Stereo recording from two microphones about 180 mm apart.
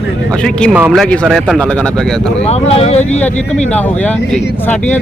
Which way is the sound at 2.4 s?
35° left (ahead or behind).